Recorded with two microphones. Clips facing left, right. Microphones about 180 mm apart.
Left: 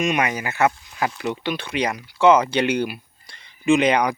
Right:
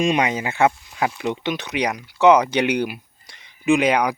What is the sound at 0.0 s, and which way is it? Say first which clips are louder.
Speech: right 2 dB; 25° right (ahead or behind).